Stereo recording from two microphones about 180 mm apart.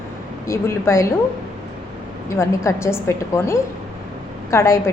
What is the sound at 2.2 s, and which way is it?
A woman's voice, 15° left (ahead or behind).